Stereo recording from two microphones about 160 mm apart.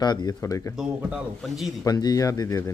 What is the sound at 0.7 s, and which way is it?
Speech, 10° right (ahead or behind).